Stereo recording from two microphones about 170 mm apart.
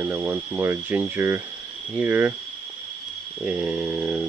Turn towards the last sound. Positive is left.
turn(degrees=-5)  # may be behind; listen again after turning